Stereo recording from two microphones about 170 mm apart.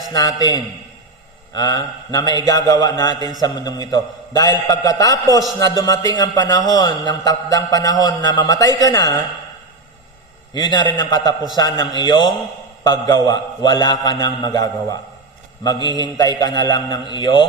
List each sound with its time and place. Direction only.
0.1 s a man's voice: 20° left (ahead or behind)
10.5 s a man's voice: 25° left (ahead or behind)